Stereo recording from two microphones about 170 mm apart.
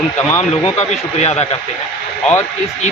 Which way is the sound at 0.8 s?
40° left (ahead or behind).